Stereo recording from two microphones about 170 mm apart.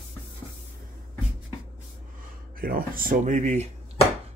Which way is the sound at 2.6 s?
60° right (ahead or behind).